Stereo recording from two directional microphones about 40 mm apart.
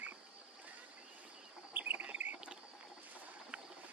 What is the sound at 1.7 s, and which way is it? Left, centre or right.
Insect, right.